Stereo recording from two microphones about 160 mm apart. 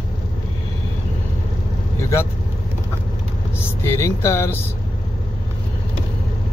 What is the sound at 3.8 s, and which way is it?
Speech, 15° left (ahead or behind).